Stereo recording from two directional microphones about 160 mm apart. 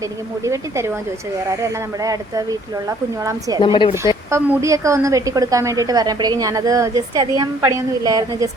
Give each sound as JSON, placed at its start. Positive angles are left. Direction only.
{"t": 0.4, "sound": "a woman's voice", "side_deg": -20}
{"t": 3.6, "sound": "speech", "side_deg": 30}
{"t": 4.3, "sound": "a woman's voice", "side_deg": -15}